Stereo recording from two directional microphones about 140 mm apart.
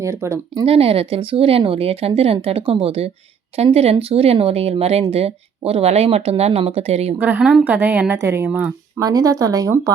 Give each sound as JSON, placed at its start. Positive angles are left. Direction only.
{"t": 0.0, "sound": "speech", "side_deg": -20}
{"t": 0.6, "sound": "speech", "side_deg": -45}
{"t": 7.2, "sound": "a woman's voice", "side_deg": -10}
{"t": 9.0, "sound": "speech", "side_deg": -25}